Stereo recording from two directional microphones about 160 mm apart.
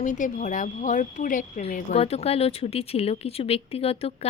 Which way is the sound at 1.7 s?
40° left (ahead or behind).